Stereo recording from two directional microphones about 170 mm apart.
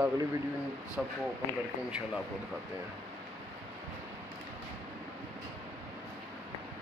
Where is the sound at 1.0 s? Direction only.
Centre (ahead or behind).